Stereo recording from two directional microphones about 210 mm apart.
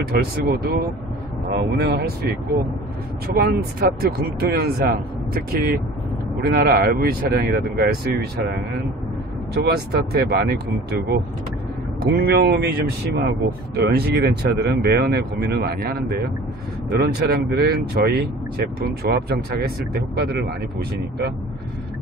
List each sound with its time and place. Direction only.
0.1 s speech: 50° right (ahead or behind)
3.3 s speech: 45° right (ahead or behind)
9.5 s speech: 50° right (ahead or behind)